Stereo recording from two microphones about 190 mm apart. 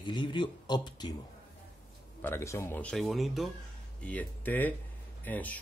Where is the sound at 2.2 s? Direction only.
15° left (ahead or behind).